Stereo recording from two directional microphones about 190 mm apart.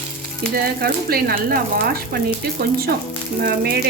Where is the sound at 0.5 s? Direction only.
55° right (ahead or behind).